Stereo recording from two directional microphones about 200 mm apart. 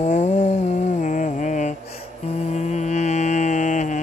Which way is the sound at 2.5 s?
35° left (ahead or behind).